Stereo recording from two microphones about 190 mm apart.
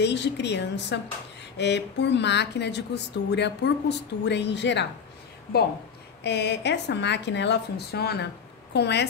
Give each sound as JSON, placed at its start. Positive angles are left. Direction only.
{"t": 0.0, "sound": "speech", "side_deg": 65}
{"t": 6.2, "sound": "speech", "side_deg": 65}